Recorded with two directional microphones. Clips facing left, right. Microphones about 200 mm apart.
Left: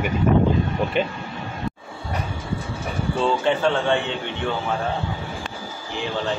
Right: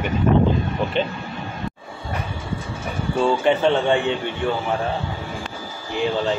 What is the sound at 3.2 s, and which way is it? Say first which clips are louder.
Speech: right 3 dB; 15° right (ahead or behind).